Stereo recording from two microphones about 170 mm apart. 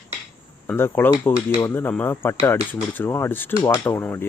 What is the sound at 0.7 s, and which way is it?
Speech, 10° left (ahead or behind).